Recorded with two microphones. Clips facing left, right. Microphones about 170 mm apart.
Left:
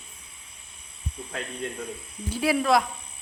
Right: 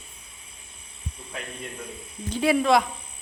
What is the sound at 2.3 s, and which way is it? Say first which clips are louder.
Speech: right 2 dB; 5° left (ahead or behind).